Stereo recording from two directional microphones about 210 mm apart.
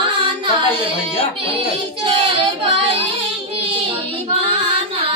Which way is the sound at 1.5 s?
25° right (ahead or behind).